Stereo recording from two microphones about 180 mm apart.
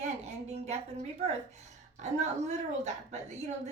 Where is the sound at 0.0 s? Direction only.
40° right (ahead or behind).